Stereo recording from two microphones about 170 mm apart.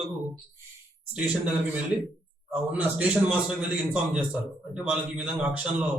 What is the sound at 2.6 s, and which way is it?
Speech, 10° right (ahead or behind).